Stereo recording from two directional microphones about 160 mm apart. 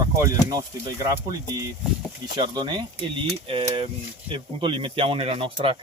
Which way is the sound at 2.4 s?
25° right (ahead or behind).